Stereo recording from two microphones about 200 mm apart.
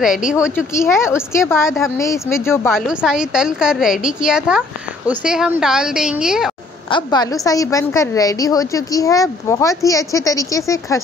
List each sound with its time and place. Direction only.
0.0 s a woman's voice: 5° right (ahead or behind)
0.7 s a woman's voice: 15° left (ahead or behind)
2.7 s a woman's voice: 5° right (ahead or behind)
6.9 s a woman's voice: 20° left (ahead or behind)